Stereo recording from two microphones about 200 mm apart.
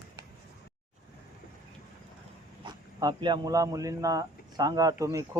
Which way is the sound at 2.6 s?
20° right (ahead or behind).